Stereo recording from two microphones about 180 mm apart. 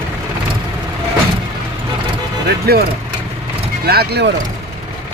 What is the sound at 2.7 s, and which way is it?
Speech, 60° right (ahead or behind).